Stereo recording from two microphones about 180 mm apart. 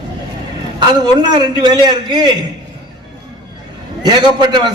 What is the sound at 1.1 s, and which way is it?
A man's voice, 25° right (ahead or behind).